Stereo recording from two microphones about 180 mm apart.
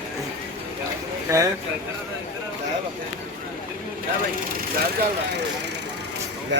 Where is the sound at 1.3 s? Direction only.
15° right (ahead or behind).